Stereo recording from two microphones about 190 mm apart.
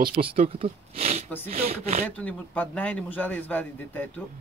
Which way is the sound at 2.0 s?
5° left (ahead or behind).